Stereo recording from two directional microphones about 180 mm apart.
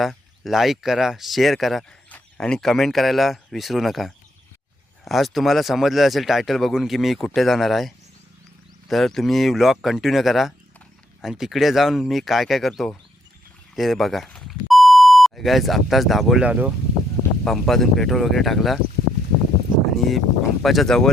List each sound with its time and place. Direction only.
0.0 s speech: centre (ahead or behind)
20.1 s speech: centre (ahead or behind)